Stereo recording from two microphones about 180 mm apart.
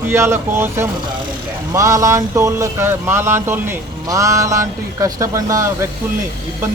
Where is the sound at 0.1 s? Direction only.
15° right (ahead or behind).